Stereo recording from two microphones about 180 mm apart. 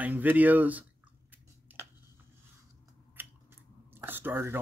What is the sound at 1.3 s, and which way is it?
Chewing, 10° right (ahead or behind).